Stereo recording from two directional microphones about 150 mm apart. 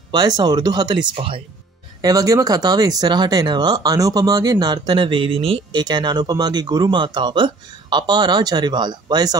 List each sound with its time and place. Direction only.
0.1 s speech: 30° right (ahead or behind)
2.0 s speech: 25° right (ahead or behind)